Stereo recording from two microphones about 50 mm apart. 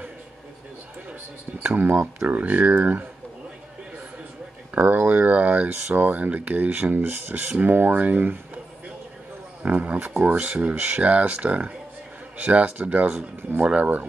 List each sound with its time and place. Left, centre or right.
1.7 s speech: right
4.7 s speech: right
9.6 s speech: right